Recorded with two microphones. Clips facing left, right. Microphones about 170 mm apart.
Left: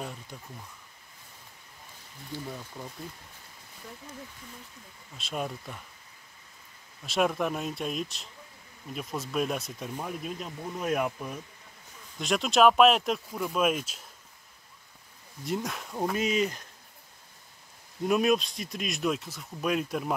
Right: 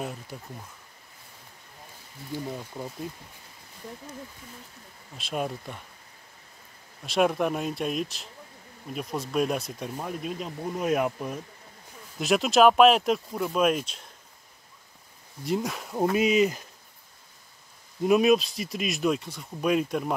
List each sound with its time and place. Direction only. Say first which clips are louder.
0.3 s speech: right 4 dB; 5° right (ahead or behind)
2.3 s speech: right 5 dB; 20° right (ahead or behind)
5.1 s speech: right 3 dB; centre (ahead or behind)
7.1 s speech: right 3 dB; centre (ahead or behind)
12.2 s speech: right 3 dB; 5° right (ahead or behind)
15.4 s speech: right 4 dB; centre (ahead or behind)
18.0 s speech: right 4 dB; centre (ahead or behind)